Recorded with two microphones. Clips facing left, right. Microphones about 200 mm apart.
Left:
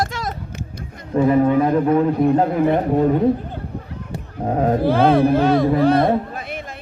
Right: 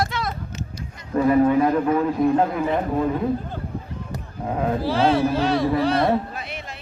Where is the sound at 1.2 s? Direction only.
25° left (ahead or behind).